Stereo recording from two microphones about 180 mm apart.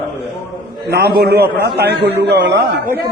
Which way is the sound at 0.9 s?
60° right (ahead or behind).